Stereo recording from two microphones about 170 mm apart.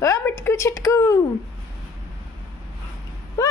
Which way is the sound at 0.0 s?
15° left (ahead or behind).